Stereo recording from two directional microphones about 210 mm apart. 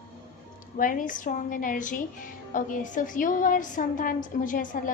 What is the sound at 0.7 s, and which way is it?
A woman's voice, 40° left (ahead or behind).